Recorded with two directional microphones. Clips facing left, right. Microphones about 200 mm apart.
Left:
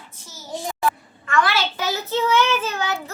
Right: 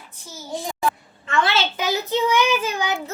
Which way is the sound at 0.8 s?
25° right (ahead or behind).